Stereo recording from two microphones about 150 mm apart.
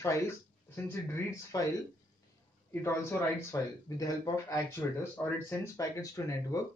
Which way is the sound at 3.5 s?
25° left (ahead or behind).